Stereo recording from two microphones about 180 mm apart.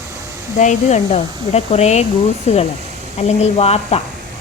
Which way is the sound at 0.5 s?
40° left (ahead or behind).